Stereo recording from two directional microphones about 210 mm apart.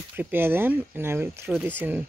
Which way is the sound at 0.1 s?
10° right (ahead or behind).